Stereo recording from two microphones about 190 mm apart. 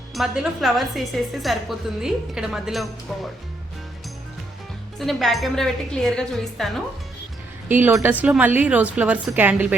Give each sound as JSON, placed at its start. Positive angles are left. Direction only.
{"t": 0.1, "sound": "a woman's voice", "side_deg": 0}
{"t": 4.9, "sound": "a woman's voice", "side_deg": 0}
{"t": 7.7, "sound": "a woman's voice", "side_deg": -10}